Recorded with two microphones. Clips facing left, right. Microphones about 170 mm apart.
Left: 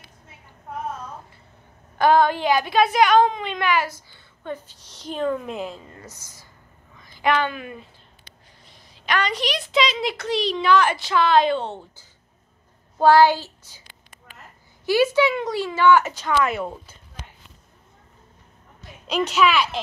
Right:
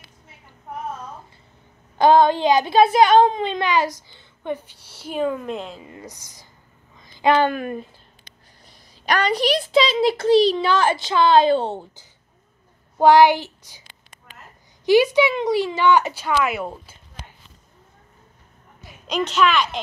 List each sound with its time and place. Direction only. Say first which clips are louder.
2.0 s a child's voice: right 3 dB; 25° right (ahead or behind); by 5.8 s centre (ahead or behind)
5.9 s speech: right 4 dB; 15° right (ahead or behind)
7.0 s a sound: right 4 dB; 25° right (ahead or behind)
7.4 s speech: right 7 dB; 45° right (ahead or behind)
9.0 s a child's voice: right 4 dB; 40° right (ahead or behind)
13.0 s speech: right 2 dB; 15° right (ahead or behind)
14.9 s speech: right 3 dB; 15° right (ahead or behind)
19.0 s a child's voice: even; 5° left (ahead or behind)